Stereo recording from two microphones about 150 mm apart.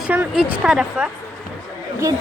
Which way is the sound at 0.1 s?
10° right (ahead or behind).